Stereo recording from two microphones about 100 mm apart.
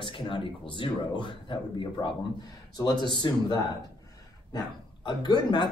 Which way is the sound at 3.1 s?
45° left (ahead or behind).